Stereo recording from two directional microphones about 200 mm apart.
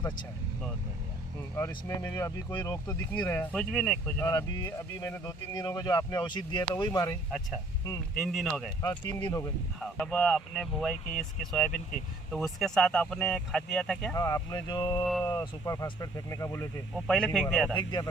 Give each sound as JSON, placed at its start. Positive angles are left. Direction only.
{"t": 1.5, "sound": "speech", "side_deg": 15}
{"t": 3.5, "sound": "speech", "side_deg": 0}
{"t": 4.3, "sound": "speech", "side_deg": 15}
{"t": 8.2, "sound": "speech", "side_deg": 0}
{"t": 8.8, "sound": "speech", "side_deg": 20}
{"t": 9.8, "sound": "speech", "side_deg": 5}
{"t": 14.2, "sound": "speech", "side_deg": 15}
{"t": 16.9, "sound": "speech", "side_deg": 5}
{"t": 17.7, "sound": "speech", "side_deg": 20}